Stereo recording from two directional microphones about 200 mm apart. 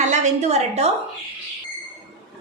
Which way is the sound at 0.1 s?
35° right (ahead or behind).